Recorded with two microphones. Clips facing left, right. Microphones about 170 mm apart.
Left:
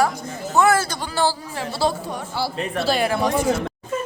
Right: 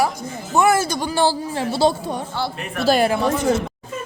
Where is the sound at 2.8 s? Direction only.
40° right (ahead or behind).